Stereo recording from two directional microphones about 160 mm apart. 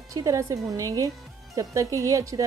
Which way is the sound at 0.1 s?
20° right (ahead or behind).